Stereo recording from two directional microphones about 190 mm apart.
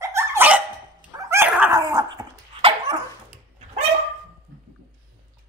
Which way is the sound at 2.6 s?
30° right (ahead or behind).